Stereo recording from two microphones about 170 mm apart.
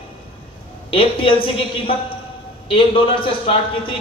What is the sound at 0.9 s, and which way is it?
Speech, 30° left (ahead or behind).